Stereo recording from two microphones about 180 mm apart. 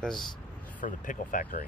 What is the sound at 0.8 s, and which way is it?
Speech, 45° left (ahead or behind).